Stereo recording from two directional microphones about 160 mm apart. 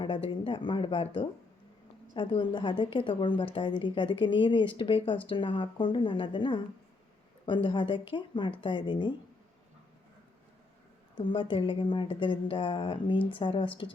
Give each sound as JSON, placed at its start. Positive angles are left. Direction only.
{"t": 0.0, "sound": "a woman's voice", "side_deg": 30}
{"t": 11.1, "sound": "a woman's voice", "side_deg": 30}